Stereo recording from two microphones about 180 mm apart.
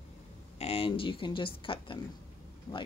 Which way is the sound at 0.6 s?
30° left (ahead or behind).